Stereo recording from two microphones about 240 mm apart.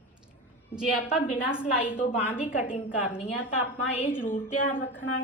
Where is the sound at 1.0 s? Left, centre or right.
Left.